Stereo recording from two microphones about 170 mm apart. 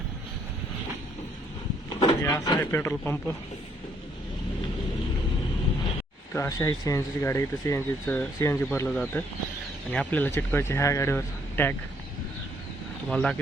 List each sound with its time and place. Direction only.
2.0 s a sound: 20° left (ahead or behind)
2.6 s speech: 10° left (ahead or behind)
6.3 s speech: 15° left (ahead or behind)
9.9 s speech: 10° left (ahead or behind)
13.1 s speech: 5° left (ahead or behind)